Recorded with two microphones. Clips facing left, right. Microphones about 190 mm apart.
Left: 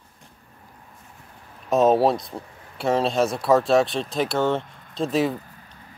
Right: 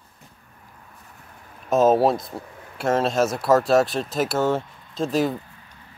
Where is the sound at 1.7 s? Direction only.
Centre (ahead or behind).